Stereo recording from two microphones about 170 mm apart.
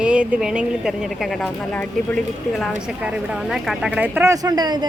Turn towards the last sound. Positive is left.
turn(degrees=-25)  # may be behind; listen again after turning